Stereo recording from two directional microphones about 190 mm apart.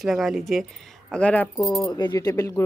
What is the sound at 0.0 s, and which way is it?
Speech, centre (ahead or behind).